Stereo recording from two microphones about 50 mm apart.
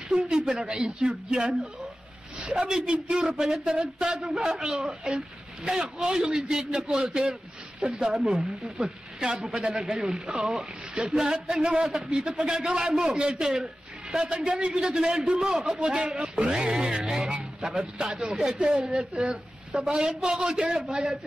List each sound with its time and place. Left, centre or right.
0.3 s a man's voice: centre
3.7 s a sound: right
4.1 s speech: centre
4.4 s a man's voice: centre
8.8 s a man's voice: centre
16.3 s a sound: centre
18.0 s a man's voice: centre